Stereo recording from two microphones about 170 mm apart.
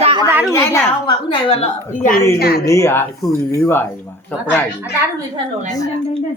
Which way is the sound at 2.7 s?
15° left (ahead or behind).